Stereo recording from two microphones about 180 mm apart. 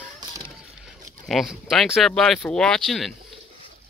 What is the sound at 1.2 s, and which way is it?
Speech, centre (ahead or behind).